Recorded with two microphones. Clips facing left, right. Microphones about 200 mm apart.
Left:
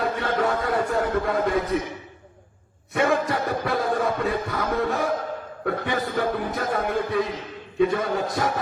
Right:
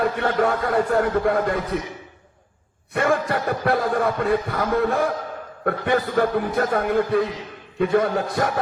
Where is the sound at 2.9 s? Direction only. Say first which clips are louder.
Right 1 dB; 60° right (ahead or behind).